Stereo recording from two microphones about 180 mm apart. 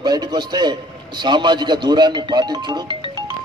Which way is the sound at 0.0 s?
25° right (ahead or behind).